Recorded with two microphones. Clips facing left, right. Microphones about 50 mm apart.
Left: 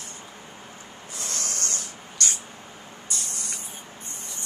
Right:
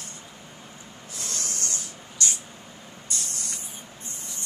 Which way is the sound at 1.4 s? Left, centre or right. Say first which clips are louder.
Left 2 dB; left.